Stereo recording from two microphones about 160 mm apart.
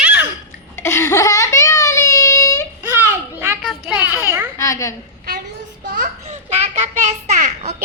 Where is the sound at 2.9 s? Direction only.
15° right (ahead or behind).